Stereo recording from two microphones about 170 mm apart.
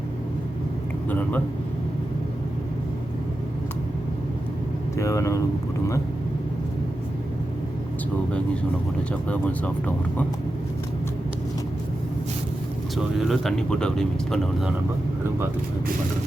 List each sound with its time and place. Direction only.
4.9 s speech: 20° left (ahead or behind)
9.3 s speech: 10° left (ahead or behind)
13.0 s speech: centre (ahead or behind)